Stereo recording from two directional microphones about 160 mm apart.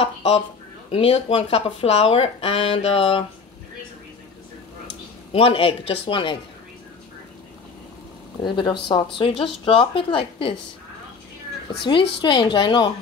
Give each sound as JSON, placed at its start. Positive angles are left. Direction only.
{"t": 0.0, "sound": "speech", "side_deg": 40}
{"t": 5.3, "sound": "speech", "side_deg": 35}
{"t": 8.4, "sound": "speech", "side_deg": 30}
{"t": 12.2, "sound": "speech", "side_deg": 30}